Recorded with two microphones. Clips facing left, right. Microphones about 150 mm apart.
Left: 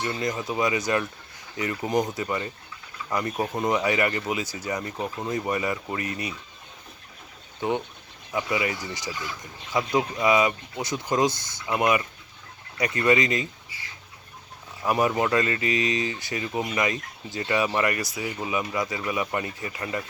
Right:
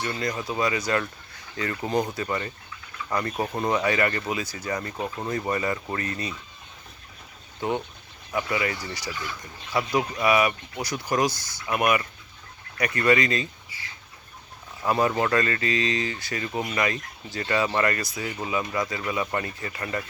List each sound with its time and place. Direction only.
0.0 s speech: 20° left (ahead or behind)
5.0 s speech: 5° left (ahead or behind)
8.3 s speech: 15° left (ahead or behind)
14.8 s speech: 15° left (ahead or behind)